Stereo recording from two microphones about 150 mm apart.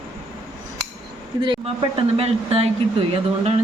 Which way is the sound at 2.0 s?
40° right (ahead or behind).